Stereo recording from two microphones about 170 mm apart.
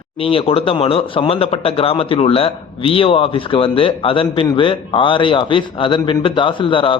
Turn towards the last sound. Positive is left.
turn(degrees=30)  # may be behind; listen again after turning